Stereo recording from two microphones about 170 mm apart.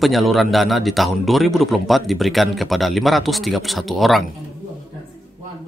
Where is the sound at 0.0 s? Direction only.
Centre (ahead or behind).